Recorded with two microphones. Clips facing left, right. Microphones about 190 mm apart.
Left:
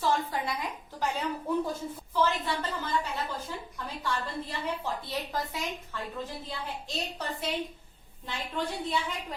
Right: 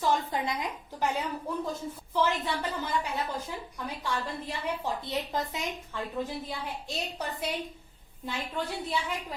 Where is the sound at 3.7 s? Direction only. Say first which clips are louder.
Even; 15° right (ahead or behind).